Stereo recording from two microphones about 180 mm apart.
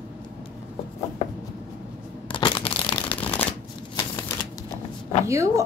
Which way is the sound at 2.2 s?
25° left (ahead or behind).